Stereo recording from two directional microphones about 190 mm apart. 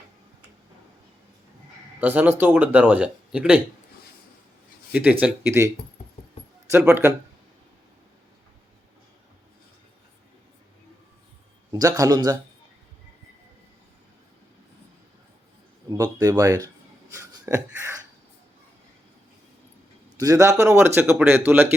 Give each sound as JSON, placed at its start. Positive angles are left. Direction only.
{"t": 2.0, "sound": "speech", "side_deg": -10}
{"t": 4.9, "sound": "speech", "side_deg": -10}
{"t": 11.7, "sound": "speech", "side_deg": -20}
{"t": 15.9, "sound": "speech", "side_deg": -20}
{"t": 17.2, "sound": "a sound", "side_deg": -15}
{"t": 20.1, "sound": "speech", "side_deg": -20}